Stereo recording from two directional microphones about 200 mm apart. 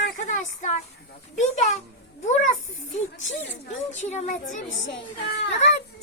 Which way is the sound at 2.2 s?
35° left (ahead or behind).